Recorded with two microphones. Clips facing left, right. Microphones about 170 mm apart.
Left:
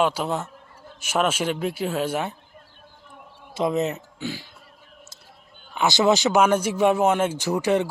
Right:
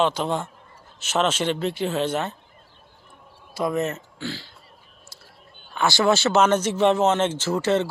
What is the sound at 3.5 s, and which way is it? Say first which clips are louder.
Speech: left 1 dB; 20° left (ahead or behind).